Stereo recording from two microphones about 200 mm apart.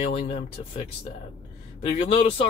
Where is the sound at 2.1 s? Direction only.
30° left (ahead or behind).